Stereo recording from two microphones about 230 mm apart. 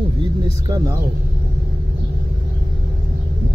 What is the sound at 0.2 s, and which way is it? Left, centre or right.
Music, centre.